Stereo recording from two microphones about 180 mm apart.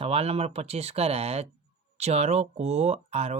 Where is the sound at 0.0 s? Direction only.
35° right (ahead or behind).